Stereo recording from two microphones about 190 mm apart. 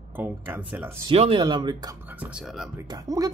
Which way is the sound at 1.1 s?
30° right (ahead or behind).